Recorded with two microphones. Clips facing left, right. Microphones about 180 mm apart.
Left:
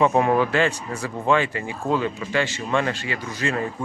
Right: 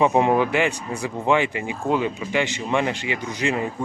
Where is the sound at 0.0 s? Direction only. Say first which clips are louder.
Right 1 dB; 20° right (ahead or behind).